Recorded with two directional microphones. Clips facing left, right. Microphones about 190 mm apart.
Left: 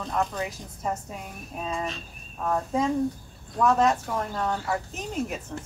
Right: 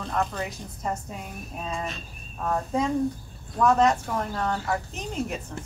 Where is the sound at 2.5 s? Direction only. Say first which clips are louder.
Even; centre (ahead or behind).